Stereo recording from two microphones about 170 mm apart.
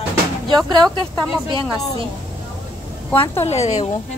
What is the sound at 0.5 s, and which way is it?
Speech, 25° right (ahead or behind).